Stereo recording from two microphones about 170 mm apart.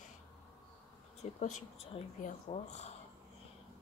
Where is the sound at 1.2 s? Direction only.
40° left (ahead or behind).